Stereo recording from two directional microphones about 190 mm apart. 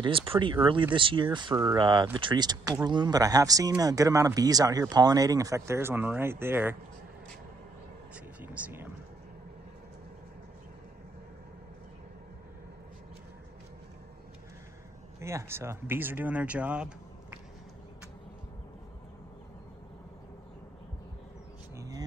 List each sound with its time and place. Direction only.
0.0 s speech: 30° right (ahead or behind); by 6.8 s 10° right (ahead or behind)
8.4 s vehicle: 10° right (ahead or behind)
15.1 s speech: 15° right (ahead or behind)
21.7 s a sound: 20° right (ahead or behind)